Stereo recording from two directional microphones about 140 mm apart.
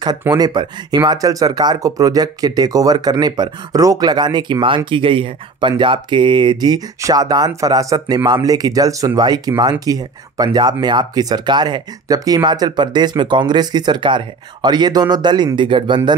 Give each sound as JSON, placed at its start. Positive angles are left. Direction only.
{"t": 0.3, "sound": "speech", "side_deg": -30}